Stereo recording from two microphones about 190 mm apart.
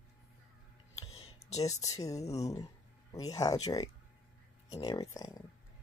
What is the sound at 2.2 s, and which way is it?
Speech, 35° left (ahead or behind).